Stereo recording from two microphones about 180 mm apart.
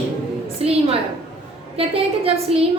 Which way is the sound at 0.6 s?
35° right (ahead or behind).